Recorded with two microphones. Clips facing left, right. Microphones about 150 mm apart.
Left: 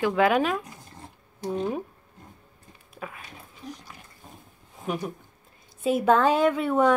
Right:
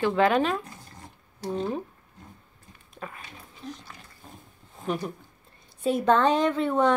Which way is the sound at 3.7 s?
10° left (ahead or behind).